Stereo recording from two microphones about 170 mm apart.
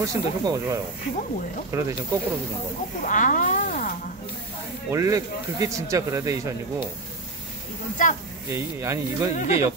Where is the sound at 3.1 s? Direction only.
50° left (ahead or behind).